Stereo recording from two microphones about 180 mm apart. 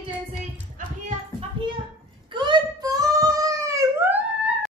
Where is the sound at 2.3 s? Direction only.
25° right (ahead or behind); by 4.5 s 10° right (ahead or behind).